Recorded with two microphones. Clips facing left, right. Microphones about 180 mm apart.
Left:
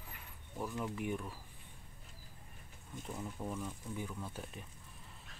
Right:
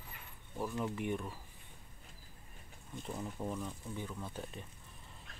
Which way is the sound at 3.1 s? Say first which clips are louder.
Right 2 dB; 10° right (ahead or behind).